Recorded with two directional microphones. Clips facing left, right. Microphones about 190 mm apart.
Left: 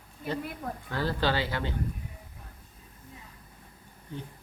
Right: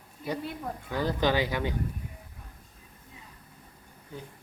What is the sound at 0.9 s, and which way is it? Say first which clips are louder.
Speech: right 2 dB; 15° right (ahead or behind).